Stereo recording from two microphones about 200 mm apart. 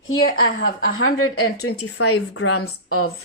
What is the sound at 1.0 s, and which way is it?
A woman's voice, 90° left.